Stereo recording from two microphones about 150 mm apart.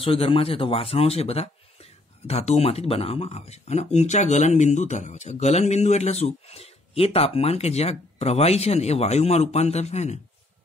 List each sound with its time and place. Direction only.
0.0 s speech: 40° left (ahead or behind)